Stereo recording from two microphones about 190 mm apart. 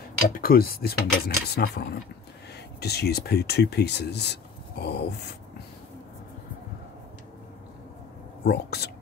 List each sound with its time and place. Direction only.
0.3 s speech: 50° left (ahead or behind)
8.5 s speech: 60° left (ahead or behind)